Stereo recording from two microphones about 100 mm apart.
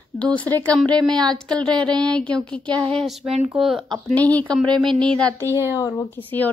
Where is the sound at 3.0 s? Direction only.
5° right (ahead or behind).